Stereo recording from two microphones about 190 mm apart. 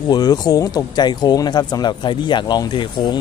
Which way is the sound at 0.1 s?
20° left (ahead or behind).